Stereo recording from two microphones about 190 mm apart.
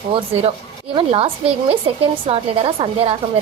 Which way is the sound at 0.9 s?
30° right (ahead or behind).